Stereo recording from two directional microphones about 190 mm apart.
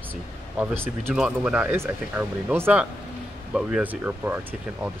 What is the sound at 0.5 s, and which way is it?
Speech, 10° right (ahead or behind).